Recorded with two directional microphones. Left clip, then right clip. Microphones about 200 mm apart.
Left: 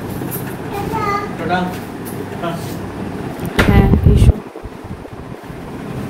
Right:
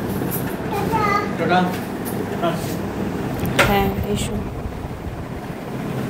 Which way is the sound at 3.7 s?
25° left (ahead or behind).